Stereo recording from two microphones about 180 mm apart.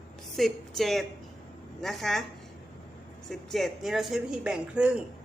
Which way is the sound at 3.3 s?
Centre (ahead or behind).